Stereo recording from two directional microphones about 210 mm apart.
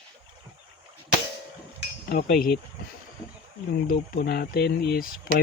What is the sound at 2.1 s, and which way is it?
Speech, 45° left (ahead or behind).